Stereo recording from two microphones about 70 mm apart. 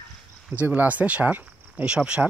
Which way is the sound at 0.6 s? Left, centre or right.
Right.